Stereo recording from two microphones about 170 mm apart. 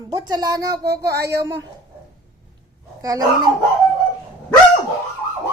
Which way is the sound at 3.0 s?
20° right (ahead or behind).